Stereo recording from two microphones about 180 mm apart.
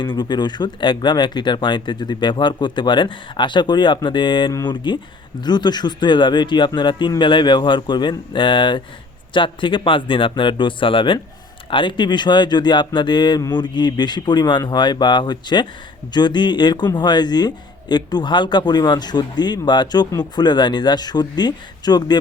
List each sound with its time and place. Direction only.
0.0 s a man's voice: 25° left (ahead or behind)